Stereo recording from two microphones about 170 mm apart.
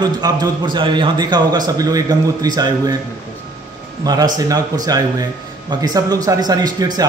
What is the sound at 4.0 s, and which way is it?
Speech, 20° right (ahead or behind).